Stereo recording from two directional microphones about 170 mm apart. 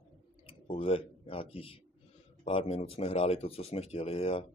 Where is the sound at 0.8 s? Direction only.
35° left (ahead or behind).